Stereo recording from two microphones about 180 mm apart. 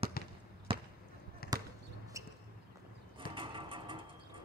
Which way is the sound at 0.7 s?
30° right (ahead or behind).